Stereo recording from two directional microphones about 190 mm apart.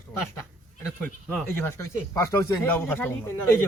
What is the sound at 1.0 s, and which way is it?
A man's voice, 10° left (ahead or behind).